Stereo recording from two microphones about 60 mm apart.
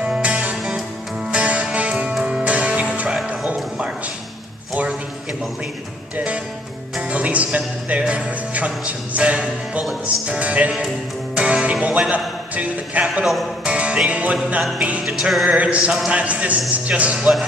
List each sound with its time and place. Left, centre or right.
0.0 s music: centre
6.1 s music: right
12.1 s a sound: right
13.2 s a man's voice: centre
13.7 s music: centre